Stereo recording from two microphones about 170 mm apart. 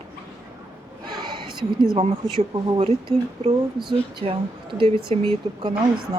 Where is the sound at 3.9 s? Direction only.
30° right (ahead or behind).